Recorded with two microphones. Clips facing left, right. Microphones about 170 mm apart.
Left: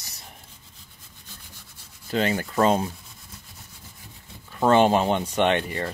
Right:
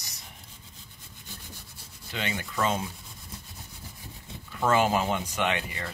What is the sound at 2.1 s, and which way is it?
Rub, 40° left (ahead or behind).